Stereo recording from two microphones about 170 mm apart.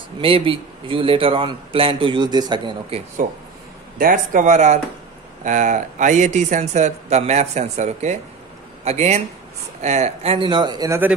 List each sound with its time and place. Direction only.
0.2 s a man's voice: 30° right (ahead or behind)
3.2 s a man's voice: 55° right (ahead or behind); by 11.0 s 25° right (ahead or behind)